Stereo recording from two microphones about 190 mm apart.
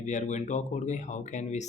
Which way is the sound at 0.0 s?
40° left (ahead or behind).